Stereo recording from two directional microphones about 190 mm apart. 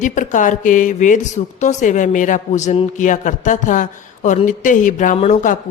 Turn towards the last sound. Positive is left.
turn(degrees=40)  # may be behind; listen again after turning